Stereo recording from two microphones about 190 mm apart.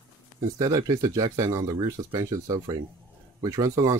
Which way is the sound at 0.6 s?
20° right (ahead or behind).